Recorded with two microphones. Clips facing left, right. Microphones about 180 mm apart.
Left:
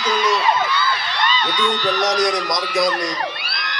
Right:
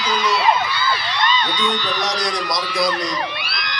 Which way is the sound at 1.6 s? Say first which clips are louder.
Left 3 dB; 45° left (ahead or behind).